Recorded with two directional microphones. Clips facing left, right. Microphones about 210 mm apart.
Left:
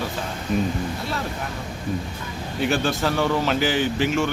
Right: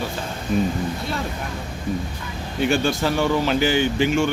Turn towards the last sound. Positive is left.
turn(degrees=0)  # may be behind; listen again after turning